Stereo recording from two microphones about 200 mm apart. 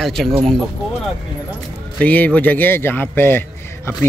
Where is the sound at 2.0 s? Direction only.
5° left (ahead or behind).